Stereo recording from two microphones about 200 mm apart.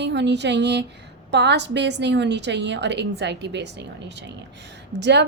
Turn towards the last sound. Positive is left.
turn(degrees=-60)  # may be behind; listen again after turning